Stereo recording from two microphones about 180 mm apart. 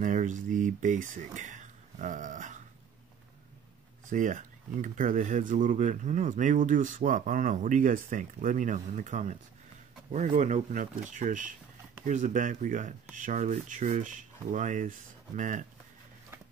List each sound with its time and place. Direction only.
0.0 s speech: 45° right (ahead or behind)
4.1 s speech: 45° right (ahead or behind)